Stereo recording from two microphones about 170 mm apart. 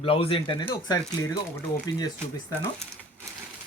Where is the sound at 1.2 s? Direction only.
15° left (ahead or behind).